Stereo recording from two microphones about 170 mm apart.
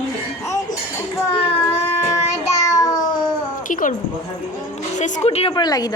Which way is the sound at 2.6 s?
20° left (ahead or behind).